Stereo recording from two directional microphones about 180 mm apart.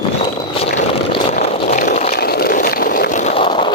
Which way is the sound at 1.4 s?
45° left (ahead or behind).